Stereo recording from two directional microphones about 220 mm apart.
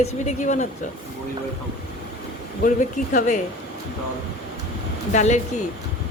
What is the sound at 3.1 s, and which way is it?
Speech, 35° left (ahead or behind).